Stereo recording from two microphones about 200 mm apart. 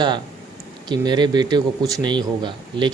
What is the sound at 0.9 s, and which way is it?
A man's voice, 20° right (ahead or behind).